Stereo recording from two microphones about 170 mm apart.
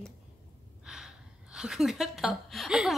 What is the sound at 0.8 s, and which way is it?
A woman's voice, 5° right (ahead or behind).